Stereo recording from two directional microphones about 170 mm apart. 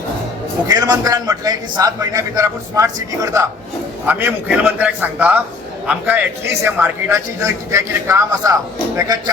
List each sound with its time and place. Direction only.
0.7 s a man's voice: 20° right (ahead or behind)